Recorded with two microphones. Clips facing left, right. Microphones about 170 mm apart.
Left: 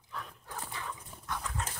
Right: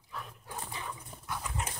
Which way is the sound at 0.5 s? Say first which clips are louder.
Even; 20° right (ahead or behind).